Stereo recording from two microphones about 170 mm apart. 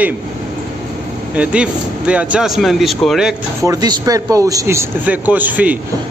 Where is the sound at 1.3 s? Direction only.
5° right (ahead or behind).